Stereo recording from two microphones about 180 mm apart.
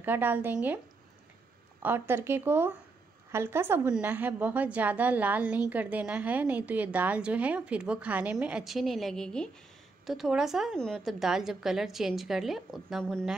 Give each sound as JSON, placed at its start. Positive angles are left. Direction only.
{"t": 0.0, "sound": "a woman's voice", "side_deg": -10}
{"t": 1.8, "sound": "a woman's voice", "side_deg": -10}